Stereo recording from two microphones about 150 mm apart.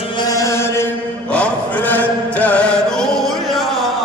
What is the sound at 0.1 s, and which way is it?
Chant, 25° left (ahead or behind).